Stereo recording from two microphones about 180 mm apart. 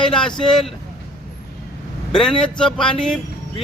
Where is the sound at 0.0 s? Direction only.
5° left (ahead or behind).